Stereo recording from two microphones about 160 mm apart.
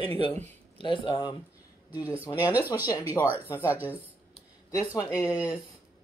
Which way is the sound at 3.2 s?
20° left (ahead or behind).